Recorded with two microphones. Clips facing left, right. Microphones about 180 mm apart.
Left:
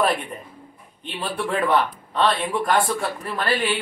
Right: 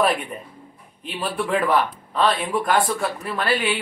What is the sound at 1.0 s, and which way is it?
Speech, centre (ahead or behind).